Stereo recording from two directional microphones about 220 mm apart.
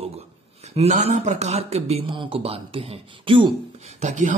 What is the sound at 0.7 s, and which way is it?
Speech, 30° right (ahead or behind).